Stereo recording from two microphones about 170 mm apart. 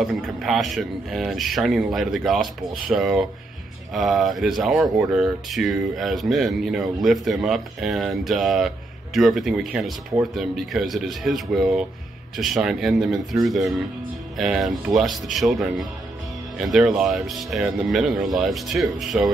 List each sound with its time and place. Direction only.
0.0 s speech: centre (ahead or behind)